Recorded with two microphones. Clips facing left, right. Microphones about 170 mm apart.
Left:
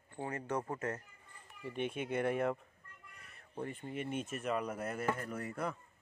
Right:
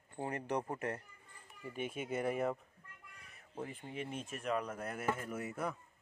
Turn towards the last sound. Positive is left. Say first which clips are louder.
# even
turn(degrees=-5)  # may be behind; listen again after turning